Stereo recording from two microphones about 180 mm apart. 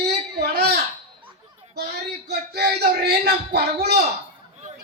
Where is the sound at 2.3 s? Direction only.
65° right (ahead or behind).